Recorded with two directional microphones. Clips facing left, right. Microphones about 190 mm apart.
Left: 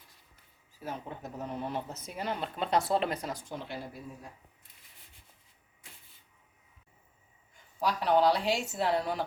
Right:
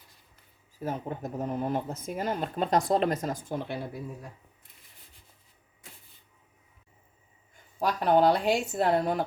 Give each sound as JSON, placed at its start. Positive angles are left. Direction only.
{"t": 0.8, "sound": "speech", "side_deg": -45}
{"t": 7.8, "sound": "speech", "side_deg": -50}